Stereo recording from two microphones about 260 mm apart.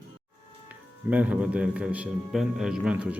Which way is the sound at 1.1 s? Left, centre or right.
Centre.